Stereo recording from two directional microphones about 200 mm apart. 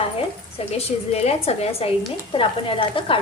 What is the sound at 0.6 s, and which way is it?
A woman's voice, 30° left (ahead or behind).